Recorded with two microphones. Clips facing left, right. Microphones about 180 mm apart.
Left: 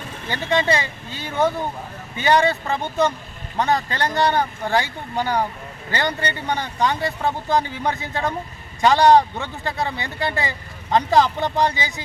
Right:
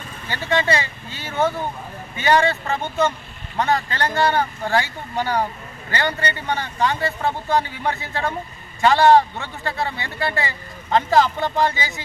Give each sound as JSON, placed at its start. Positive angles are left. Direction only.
{"t": 0.3, "sound": "speech", "side_deg": 15}